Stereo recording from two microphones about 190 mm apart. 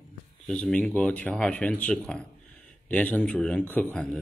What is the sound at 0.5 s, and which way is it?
Speech, 5° left (ahead or behind).